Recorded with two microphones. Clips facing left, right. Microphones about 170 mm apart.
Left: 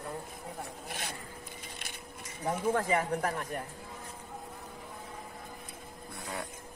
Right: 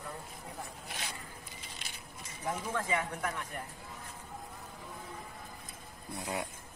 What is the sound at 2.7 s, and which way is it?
Speech, 45° left (ahead or behind).